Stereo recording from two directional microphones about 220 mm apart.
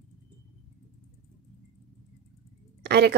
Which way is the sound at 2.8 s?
50° right (ahead or behind).